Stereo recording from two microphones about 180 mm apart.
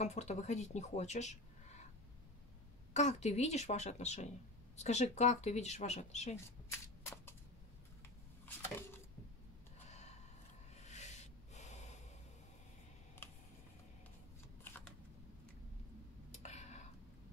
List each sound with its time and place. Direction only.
0.0 s speech: 40° left (ahead or behind)
2.9 s speech: 40° left (ahead or behind)
8.5 s a sound: 10° left (ahead or behind)
9.8 s gasp: 40° left (ahead or behind)
10.8 s snort: 40° left (ahead or behind)
16.4 s a sound: 40° left (ahead or behind)